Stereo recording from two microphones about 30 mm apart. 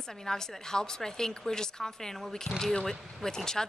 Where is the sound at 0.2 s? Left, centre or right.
Centre.